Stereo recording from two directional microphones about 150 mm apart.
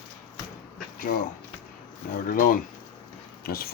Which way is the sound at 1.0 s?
75° left (ahead or behind).